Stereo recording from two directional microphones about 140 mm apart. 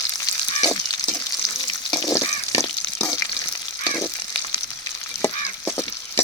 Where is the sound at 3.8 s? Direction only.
20° left (ahead or behind).